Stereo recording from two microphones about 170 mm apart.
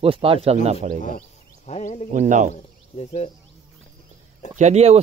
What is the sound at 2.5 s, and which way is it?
Speech, 40° left (ahead or behind).